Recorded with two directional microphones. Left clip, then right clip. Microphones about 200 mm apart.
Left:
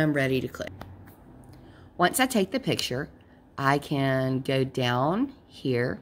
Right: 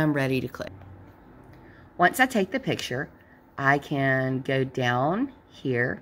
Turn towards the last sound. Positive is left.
turn(degrees=0)  # may be behind; listen again after turning